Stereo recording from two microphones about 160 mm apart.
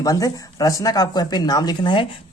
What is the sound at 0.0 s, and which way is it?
A man's voice, 20° left (ahead or behind).